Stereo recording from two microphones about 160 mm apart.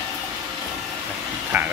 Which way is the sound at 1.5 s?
10° right (ahead or behind).